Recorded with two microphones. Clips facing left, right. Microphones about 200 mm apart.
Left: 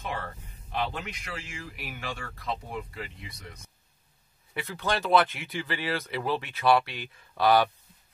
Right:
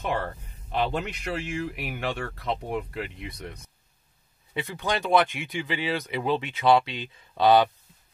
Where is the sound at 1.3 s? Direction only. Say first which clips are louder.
Right 13 dB; 65° right (ahead or behind).